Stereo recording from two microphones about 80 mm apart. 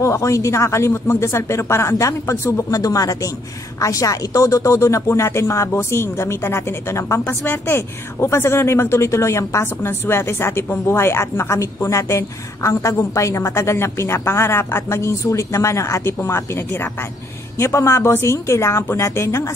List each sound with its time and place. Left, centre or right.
0.0 s a woman's voice: left
2.7 s a woman's voice: left
7.2 s a woman's voice: left